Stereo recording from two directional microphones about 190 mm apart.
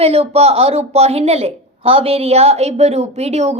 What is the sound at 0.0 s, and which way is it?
A woman's voice, 30° right (ahead or behind).